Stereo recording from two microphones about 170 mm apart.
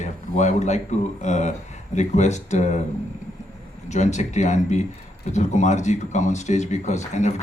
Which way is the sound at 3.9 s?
45° left (ahead or behind).